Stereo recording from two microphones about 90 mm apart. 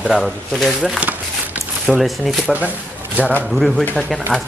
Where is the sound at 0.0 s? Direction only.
Centre (ahead or behind).